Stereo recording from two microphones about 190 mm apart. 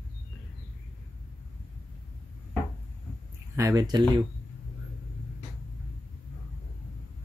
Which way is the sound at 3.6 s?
20° right (ahead or behind).